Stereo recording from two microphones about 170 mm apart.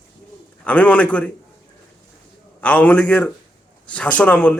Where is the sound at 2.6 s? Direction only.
10° left (ahead or behind).